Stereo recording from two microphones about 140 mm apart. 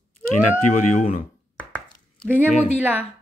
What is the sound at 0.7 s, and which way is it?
Speech, 60° left (ahead or behind).